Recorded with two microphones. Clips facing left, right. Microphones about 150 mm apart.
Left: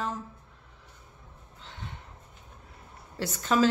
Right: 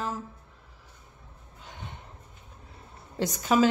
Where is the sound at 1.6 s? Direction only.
15° right (ahead or behind).